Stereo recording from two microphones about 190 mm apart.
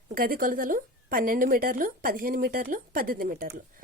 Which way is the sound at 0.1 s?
50° right (ahead or behind).